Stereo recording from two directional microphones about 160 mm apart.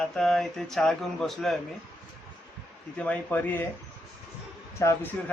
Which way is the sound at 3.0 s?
10° left (ahead or behind).